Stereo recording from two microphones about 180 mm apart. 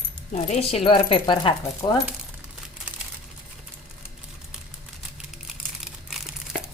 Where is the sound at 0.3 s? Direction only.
35° left (ahead or behind).